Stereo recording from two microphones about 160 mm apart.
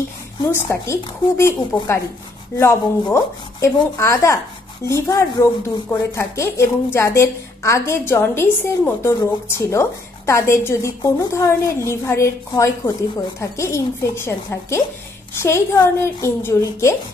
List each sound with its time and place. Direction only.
0.5 s a woman's voice: 15° left (ahead or behind)